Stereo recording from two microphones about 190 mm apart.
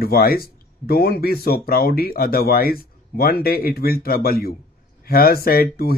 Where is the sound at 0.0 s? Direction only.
50° left (ahead or behind).